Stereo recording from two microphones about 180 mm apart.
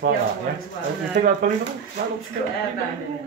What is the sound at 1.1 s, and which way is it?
Speech, 55° right (ahead or behind).